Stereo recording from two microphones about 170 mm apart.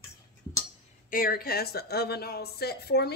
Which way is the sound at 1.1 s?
60° left (ahead or behind).